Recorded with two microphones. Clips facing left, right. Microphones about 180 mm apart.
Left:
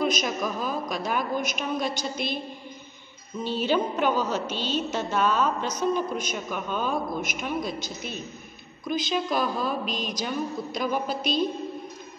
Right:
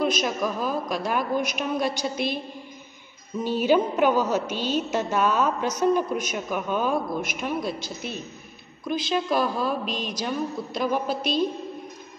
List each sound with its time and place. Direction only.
0.0 s a man's voice: 5° right (ahead or behind)
3.4 s a man's voice: 10° right (ahead or behind)
4.5 s a woman's voice: 40° right (ahead or behind)
4.9 s a man's voice: 5° right (ahead or behind)